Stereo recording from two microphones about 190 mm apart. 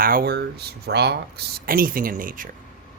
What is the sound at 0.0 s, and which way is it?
Speech, 50° right (ahead or behind).